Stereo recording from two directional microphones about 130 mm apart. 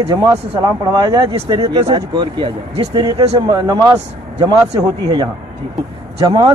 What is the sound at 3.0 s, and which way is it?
Speech, 30° right (ahead or behind).